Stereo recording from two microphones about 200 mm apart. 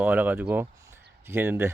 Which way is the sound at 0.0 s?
10° right (ahead or behind).